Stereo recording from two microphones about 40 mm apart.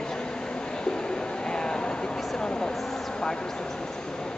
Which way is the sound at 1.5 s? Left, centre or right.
Centre.